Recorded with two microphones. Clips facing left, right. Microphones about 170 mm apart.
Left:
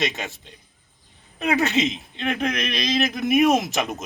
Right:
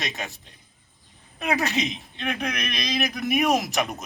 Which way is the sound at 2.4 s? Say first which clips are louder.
Left 5 dB; 25° left (ahead or behind).